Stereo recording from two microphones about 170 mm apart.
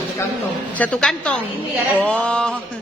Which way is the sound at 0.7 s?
5° left (ahead or behind).